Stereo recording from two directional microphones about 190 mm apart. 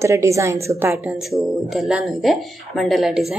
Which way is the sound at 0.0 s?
15° right (ahead or behind).